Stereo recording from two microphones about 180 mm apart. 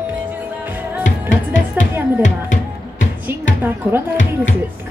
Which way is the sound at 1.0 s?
45° left (ahead or behind).